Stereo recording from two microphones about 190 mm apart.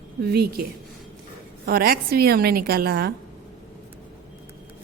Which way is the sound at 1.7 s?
50° right (ahead or behind).